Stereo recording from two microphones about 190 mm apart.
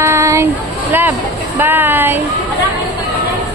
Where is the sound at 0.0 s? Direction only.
15° right (ahead or behind).